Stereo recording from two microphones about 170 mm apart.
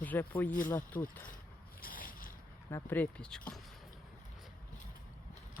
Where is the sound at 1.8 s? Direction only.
55° left (ahead or behind).